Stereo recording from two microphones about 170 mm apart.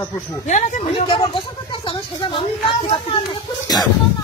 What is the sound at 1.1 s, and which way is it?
Speech, 30° left (ahead or behind).